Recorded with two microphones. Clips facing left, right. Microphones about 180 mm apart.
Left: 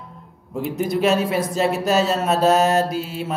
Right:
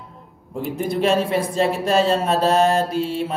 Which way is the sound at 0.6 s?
Centre (ahead or behind).